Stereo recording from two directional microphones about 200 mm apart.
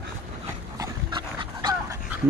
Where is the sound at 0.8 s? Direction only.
20° right (ahead or behind).